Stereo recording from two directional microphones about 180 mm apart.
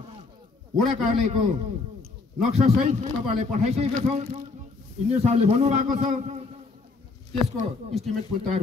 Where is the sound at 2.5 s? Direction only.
40° right (ahead or behind).